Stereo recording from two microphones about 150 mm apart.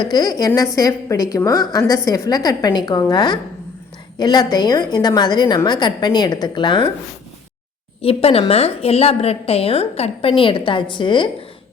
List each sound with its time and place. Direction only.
0.0 s a woman's voice: 25° left (ahead or behind)
8.0 s a woman's voice: 40° left (ahead or behind)